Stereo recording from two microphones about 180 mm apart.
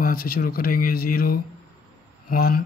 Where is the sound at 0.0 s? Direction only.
55° left (ahead or behind).